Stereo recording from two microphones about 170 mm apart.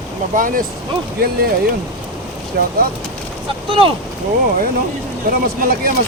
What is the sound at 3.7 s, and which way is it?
Speech, 30° right (ahead or behind).